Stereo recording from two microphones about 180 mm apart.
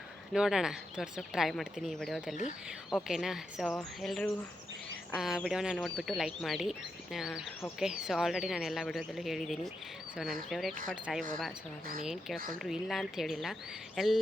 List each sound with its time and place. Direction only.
0.3 s speech: 5° right (ahead or behind)